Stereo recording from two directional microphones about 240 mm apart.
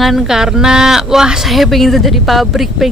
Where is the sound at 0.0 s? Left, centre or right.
Centre.